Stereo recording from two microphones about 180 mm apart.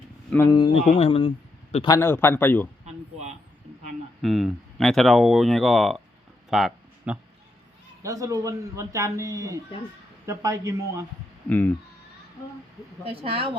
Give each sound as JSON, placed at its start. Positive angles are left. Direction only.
{"t": 0.3, "sound": "speech", "side_deg": 15}
{"t": 2.0, "sound": "a man's voice", "side_deg": 15}
{"t": 2.8, "sound": "a sound", "side_deg": -40}
{"t": 4.2, "sound": "speech", "side_deg": 0}
{"t": 6.5, "sound": "a sound", "side_deg": 0}
{"t": 8.0, "sound": "a man's voice", "side_deg": -20}
{"t": 11.4, "sound": "a man's voice", "side_deg": 10}
{"t": 13.1, "sound": "speech", "side_deg": -30}